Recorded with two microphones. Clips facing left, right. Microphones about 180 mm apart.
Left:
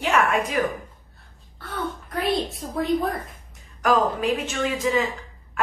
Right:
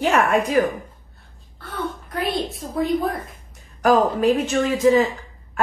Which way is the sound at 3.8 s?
40° right (ahead or behind).